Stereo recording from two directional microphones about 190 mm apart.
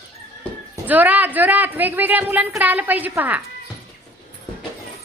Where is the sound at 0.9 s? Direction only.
10° right (ahead or behind).